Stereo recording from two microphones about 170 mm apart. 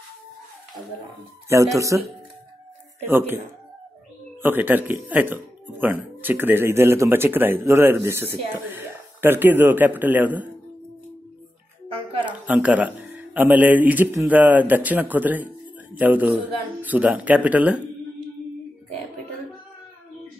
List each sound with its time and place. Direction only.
1.8 s speech: 20° right (ahead or behind)
3.1 s speech: 15° right (ahead or behind)
4.4 s speech: 10° right (ahead or behind)
12.3 s speech: 10° right (ahead or behind)